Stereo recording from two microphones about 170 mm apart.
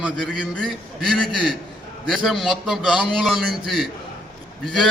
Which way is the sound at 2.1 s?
Centre (ahead or behind).